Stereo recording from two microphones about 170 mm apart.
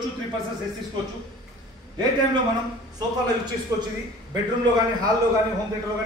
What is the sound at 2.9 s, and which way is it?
Speech, 25° right (ahead or behind).